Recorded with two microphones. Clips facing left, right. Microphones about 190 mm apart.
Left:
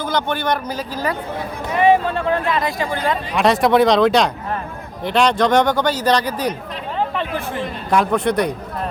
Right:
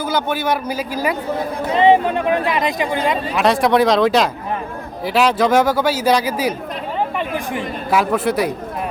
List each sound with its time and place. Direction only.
0.0 s speech: 5° right (ahead or behind)
1.7 s speech: 20° right (ahead or behind)
3.3 s speech: centre (ahead or behind)